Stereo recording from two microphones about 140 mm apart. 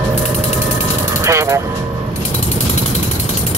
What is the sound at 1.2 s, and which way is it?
Vehicle, 20° right (ahead or behind).